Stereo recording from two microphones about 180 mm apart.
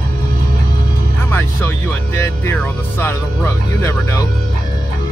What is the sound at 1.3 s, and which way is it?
Speech, 10° left (ahead or behind).